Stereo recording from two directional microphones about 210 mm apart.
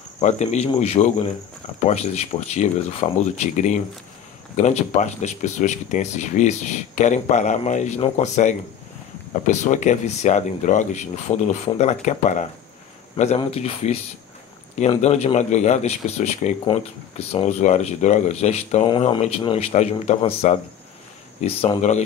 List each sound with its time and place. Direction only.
0.2 s speech: 35° left (ahead or behind)